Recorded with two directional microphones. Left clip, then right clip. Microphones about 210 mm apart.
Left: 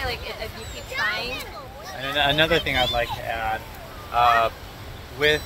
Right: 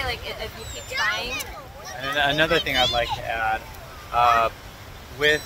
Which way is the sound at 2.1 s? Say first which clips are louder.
Left 1 dB; 10° left (ahead or behind).